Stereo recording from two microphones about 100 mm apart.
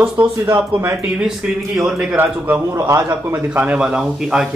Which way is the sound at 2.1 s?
20° right (ahead or behind).